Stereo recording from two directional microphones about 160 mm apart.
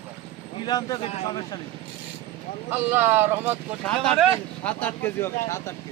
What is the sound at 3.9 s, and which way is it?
Speech, centre (ahead or behind).